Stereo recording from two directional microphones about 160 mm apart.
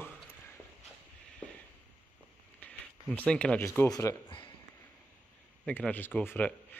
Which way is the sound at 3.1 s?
5° left (ahead or behind).